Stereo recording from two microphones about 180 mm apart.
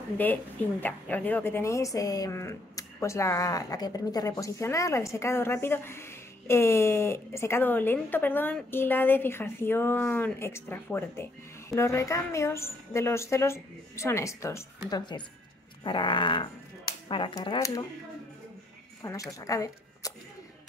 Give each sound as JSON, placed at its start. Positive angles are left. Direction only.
{"t": 0.2, "sound": "a woman's voice", "side_deg": 10}
{"t": 19.0, "sound": "a woman's voice", "side_deg": 15}